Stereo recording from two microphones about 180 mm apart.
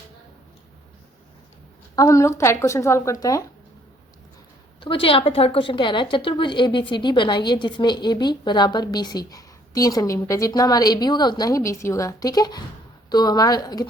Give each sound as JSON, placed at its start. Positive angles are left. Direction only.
{"t": 2.0, "sound": "a woman's voice", "side_deg": 15}
{"t": 4.8, "sound": "a woman's voice", "side_deg": 30}